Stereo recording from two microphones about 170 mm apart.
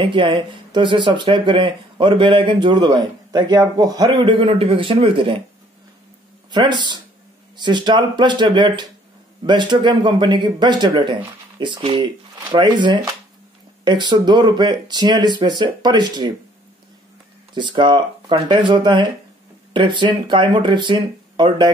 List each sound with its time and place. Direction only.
0.0 s speech: 30° right (ahead or behind)
6.5 s speech: 25° right (ahead or behind)
17.6 s speech: 25° right (ahead or behind)